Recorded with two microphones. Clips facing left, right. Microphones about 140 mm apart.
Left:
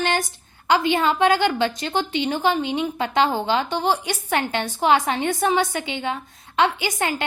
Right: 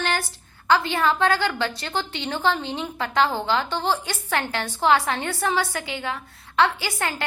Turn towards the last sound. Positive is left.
turn(degrees=15)  # may be behind; listen again after turning